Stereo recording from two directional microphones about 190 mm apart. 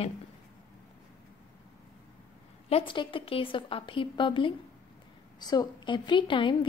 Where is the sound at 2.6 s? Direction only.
30° left (ahead or behind).